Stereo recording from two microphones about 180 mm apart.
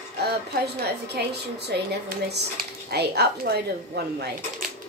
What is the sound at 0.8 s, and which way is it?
Speech, 65° right (ahead or behind).